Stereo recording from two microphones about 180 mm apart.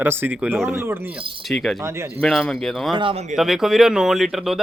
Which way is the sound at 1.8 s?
15° right (ahead or behind).